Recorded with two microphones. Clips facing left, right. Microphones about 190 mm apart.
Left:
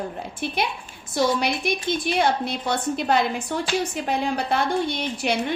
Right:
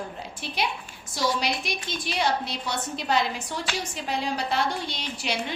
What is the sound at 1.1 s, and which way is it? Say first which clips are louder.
A woman's voice: left 5 dB; 55° left (ahead or behind).